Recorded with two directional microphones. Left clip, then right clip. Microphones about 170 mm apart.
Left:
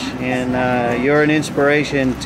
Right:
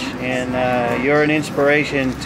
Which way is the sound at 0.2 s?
25° left (ahead or behind).